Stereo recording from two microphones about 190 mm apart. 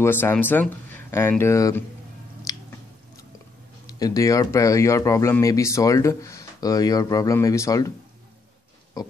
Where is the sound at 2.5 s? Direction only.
20° left (ahead or behind).